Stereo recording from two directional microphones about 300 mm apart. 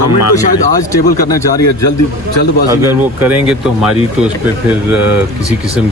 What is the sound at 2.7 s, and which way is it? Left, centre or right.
Speech, centre.